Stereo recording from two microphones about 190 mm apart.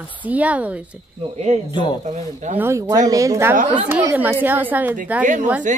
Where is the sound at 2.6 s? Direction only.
15° right (ahead or behind).